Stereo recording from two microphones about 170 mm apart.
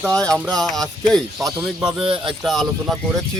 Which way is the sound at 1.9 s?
30° right (ahead or behind).